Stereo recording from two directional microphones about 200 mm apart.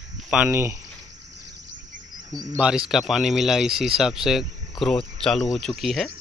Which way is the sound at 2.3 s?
20° right (ahead or behind).